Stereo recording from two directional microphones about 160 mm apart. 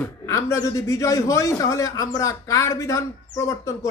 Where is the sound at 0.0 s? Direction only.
20° left (ahead or behind).